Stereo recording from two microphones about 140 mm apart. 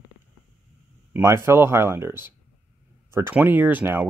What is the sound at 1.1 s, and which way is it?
Speech, 20° right (ahead or behind).